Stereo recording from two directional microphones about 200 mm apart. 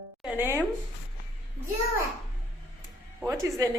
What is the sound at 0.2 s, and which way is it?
Speech, 5° right (ahead or behind).